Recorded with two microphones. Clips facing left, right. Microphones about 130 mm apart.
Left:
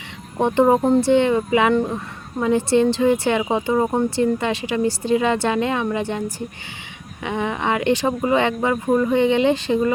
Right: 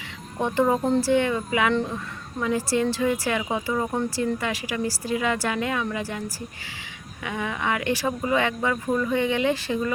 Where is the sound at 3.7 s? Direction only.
35° left (ahead or behind).